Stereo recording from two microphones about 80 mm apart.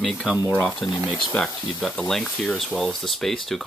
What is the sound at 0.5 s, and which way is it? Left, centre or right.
Speech, centre.